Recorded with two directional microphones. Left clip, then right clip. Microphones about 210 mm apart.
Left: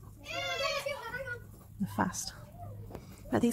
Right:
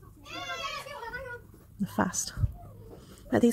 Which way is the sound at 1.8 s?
20° right (ahead or behind).